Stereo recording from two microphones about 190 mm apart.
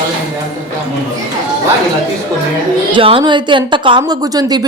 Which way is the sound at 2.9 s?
25° right (ahead or behind).